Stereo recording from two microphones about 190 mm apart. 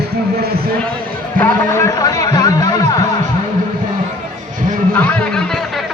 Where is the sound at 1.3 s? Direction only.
15° left (ahead or behind).